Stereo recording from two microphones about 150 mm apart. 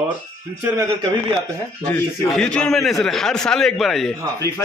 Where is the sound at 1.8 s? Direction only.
10° left (ahead or behind).